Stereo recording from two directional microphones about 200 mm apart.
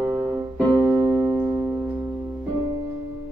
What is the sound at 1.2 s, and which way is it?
Music, 10° right (ahead or behind).